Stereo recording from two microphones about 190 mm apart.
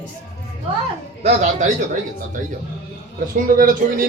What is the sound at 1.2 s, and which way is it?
Speech, 40° right (ahead or behind).